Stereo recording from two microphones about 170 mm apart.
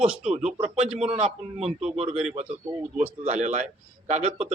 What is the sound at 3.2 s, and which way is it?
Speech, 45° right (ahead or behind).